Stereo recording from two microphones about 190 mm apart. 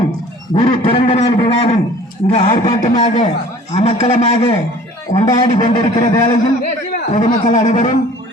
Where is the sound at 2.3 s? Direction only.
30° left (ahead or behind).